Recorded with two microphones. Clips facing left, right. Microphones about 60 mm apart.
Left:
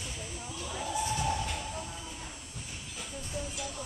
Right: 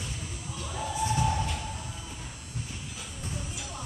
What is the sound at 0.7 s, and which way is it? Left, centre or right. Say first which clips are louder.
Music: right 4 dB; right.